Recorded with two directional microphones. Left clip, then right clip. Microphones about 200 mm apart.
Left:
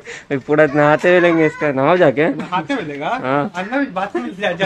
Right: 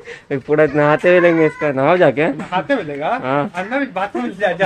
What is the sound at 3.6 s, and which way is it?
Speech, 40° right (ahead or behind).